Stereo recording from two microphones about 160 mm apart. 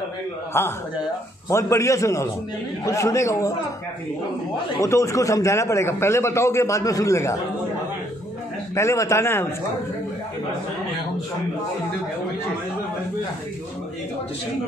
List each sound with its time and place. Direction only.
0.5 s a man's voice: 15° left (ahead or behind)
4.7 s a man's voice: 20° left (ahead or behind)
8.7 s a man's voice: 20° left (ahead or behind)